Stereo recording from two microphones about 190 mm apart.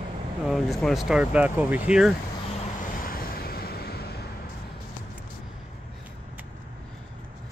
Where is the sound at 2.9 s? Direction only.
50° left (ahead or behind).